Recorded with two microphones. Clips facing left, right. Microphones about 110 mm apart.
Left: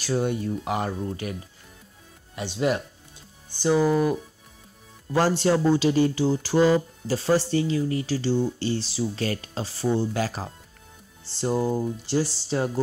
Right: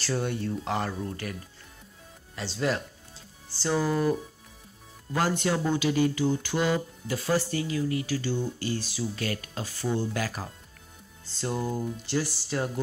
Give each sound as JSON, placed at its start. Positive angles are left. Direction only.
{"t": 0.0, "sound": "speech", "side_deg": 15}
{"t": 2.3, "sound": "speech", "side_deg": 15}
{"t": 5.1, "sound": "speech", "side_deg": 30}